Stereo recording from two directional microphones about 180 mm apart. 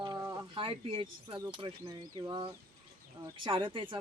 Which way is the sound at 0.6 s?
30° right (ahead or behind).